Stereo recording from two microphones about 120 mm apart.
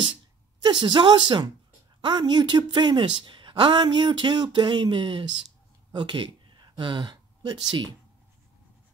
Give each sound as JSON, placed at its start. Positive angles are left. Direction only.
{"t": 0.6, "sound": "a woman's voice", "side_deg": -40}